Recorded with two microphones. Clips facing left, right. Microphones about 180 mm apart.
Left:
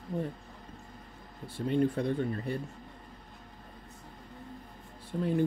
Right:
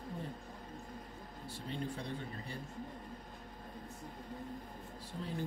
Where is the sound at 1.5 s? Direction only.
55° left (ahead or behind).